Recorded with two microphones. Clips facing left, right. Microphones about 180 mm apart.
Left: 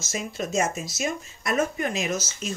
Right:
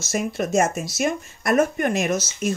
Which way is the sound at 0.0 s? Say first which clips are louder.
Right 6 dB; 60° right (ahead or behind).